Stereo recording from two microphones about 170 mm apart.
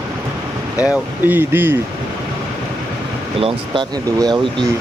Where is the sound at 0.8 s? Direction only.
10° right (ahead or behind).